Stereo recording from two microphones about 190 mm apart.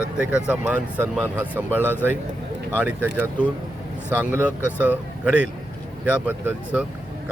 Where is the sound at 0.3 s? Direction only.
5° right (ahead or behind).